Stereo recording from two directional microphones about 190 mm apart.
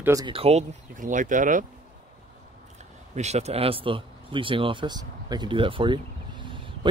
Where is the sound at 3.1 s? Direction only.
35° right (ahead or behind).